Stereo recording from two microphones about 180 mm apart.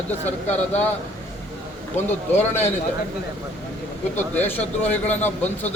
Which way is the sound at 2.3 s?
10° left (ahead or behind).